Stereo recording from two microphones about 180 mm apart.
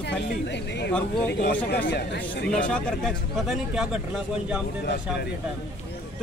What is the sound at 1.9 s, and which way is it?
Speech, 65° left (ahead or behind).